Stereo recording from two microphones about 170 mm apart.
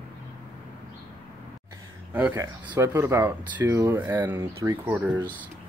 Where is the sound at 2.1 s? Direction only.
10° right (ahead or behind).